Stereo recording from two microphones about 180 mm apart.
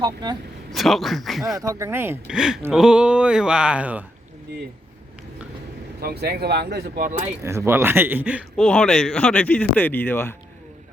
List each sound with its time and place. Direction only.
0.0 s speech: 25° right (ahead or behind)
0.7 s speech: centre (ahead or behind)
1.5 s speech: 20° right (ahead or behind)
6.0 s speech: 60° right (ahead or behind)
7.4 s speech: 15° right (ahead or behind)
8.5 s speech: 5° left (ahead or behind)